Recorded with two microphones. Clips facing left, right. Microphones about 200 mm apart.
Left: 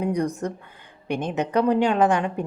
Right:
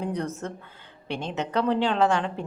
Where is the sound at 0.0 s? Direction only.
10° left (ahead or behind).